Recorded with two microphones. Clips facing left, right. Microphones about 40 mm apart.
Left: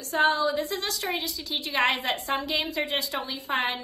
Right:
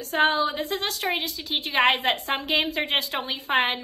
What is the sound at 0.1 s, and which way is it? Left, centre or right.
A woman's voice, right.